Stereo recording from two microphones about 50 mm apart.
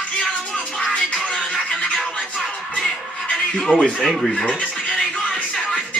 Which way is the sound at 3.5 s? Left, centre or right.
Centre.